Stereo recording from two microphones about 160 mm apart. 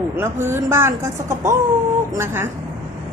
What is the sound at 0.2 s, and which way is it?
Speech, 15° right (ahead or behind).